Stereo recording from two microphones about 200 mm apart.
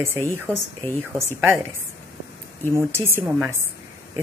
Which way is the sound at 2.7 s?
10° right (ahead or behind).